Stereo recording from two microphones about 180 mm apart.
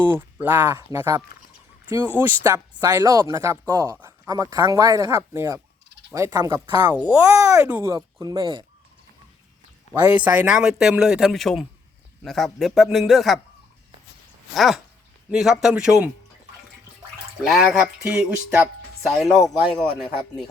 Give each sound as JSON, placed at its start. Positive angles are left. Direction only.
{"t": 0.0, "sound": "speech", "side_deg": -10}
{"t": 10.1, "sound": "speech", "side_deg": -10}
{"t": 14.5, "sound": "speech", "side_deg": 0}
{"t": 17.4, "sound": "speech", "side_deg": 0}